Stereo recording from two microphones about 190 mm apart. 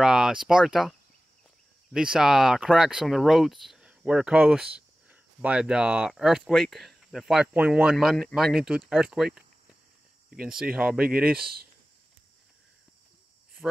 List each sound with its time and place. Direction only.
0.0 s speech: 5° right (ahead or behind)
10.4 s speech: 5° right (ahead or behind)
11.2 s speech: 50° right (ahead or behind)